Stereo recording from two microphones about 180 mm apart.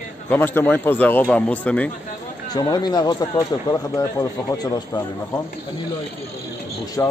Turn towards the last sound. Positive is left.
turn(degrees=15)  # may be behind; listen again after turning